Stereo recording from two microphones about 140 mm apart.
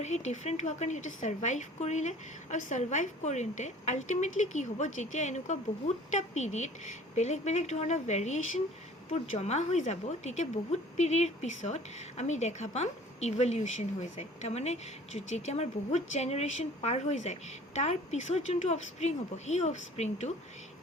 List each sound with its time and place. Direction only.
0.0 s a woman's voice: 55° left (ahead or behind)